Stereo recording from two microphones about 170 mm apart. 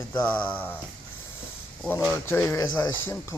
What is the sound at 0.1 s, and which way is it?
Speech, 10° left (ahead or behind).